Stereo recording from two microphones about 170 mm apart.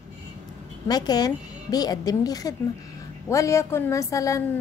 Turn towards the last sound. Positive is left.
turn(degrees=20)  # may be behind; listen again after turning